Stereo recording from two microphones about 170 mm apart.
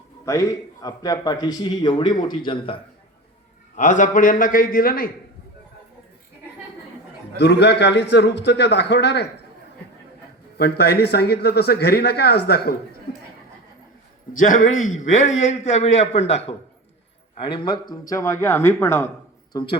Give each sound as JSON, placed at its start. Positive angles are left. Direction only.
{"t": 0.3, "sound": "a man's voice", "side_deg": 20}
{"t": 3.8, "sound": "a man's voice", "side_deg": 45}
{"t": 7.3, "sound": "a man's voice", "side_deg": 80}
{"t": 10.6, "sound": "speech", "side_deg": 70}
{"t": 14.3, "sound": "a man's voice", "side_deg": 50}
{"t": 17.4, "sound": "a man's voice", "side_deg": 30}
{"t": 19.5, "sound": "a man's voice", "side_deg": 30}